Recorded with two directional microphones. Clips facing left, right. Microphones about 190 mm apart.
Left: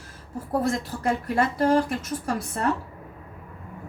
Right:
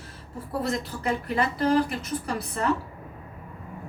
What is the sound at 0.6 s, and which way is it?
A woman's voice, 45° left (ahead or behind).